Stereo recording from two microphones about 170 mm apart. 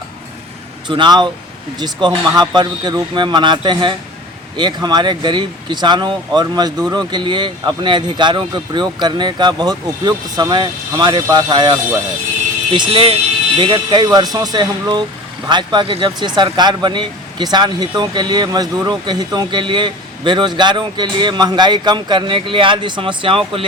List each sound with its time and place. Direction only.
0.9 s speech: 25° right (ahead or behind)